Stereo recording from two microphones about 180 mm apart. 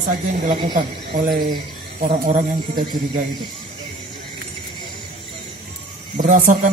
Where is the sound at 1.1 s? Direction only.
50° right (ahead or behind).